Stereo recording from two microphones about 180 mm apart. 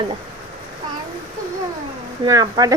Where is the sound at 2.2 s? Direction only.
20° right (ahead or behind).